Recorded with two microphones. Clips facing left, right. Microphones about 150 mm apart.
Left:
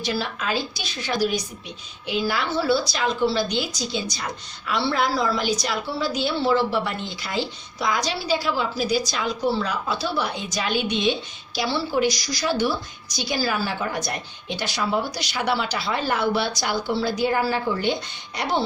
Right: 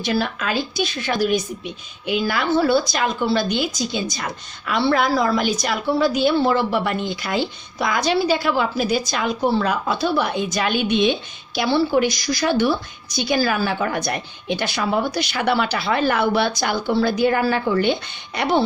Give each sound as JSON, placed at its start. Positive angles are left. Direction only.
{"t": 0.0, "sound": "a woman's voice", "side_deg": -55}